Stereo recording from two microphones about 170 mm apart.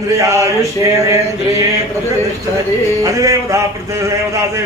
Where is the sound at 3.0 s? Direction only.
20° right (ahead or behind).